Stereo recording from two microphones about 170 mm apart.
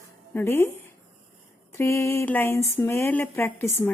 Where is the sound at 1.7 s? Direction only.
15° left (ahead or behind).